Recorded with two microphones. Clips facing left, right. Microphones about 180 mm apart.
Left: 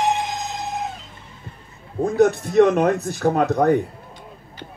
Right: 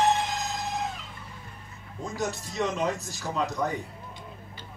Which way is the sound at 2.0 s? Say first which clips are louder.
Left 15 dB; 55° left (ahead or behind).